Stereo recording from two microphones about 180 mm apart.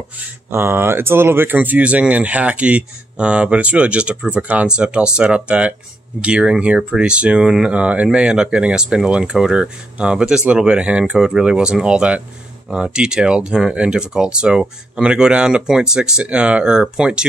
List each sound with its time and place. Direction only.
0.5 s speech: 15° right (ahead or behind)